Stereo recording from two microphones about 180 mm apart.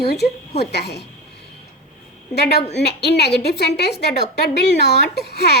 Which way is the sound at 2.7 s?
65° left (ahead or behind).